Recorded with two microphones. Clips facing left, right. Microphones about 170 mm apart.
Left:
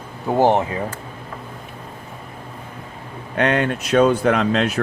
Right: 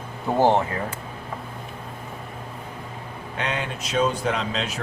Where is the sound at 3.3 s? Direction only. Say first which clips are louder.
Left 10 dB; 60° left (ahead or behind).